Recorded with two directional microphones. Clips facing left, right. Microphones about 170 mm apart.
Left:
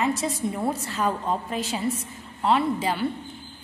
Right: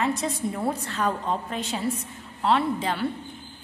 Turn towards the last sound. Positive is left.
turn(degrees=5)  # may be behind; listen again after turning